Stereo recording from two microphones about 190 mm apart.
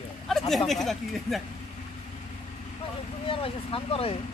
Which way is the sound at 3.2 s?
30° left (ahead or behind).